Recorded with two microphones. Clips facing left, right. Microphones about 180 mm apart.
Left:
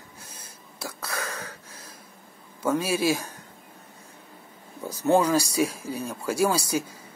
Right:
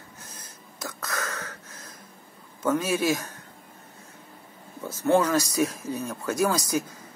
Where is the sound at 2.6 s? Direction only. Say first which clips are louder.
Even; 10° left (ahead or behind).